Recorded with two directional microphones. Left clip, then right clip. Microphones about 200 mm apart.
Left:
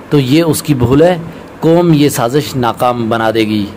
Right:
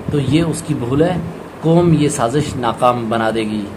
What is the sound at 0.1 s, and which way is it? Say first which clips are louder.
Speech: left 7 dB; 30° left (ahead or behind).